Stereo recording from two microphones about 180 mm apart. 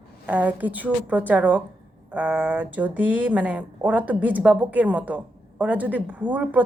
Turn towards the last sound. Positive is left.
turn(degrees=-10)  # may be behind; listen again after turning